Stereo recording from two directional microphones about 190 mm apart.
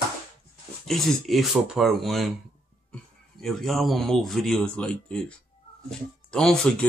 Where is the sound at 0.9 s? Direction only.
Centre (ahead or behind).